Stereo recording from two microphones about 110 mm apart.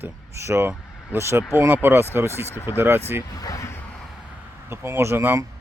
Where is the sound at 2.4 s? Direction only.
25° left (ahead or behind).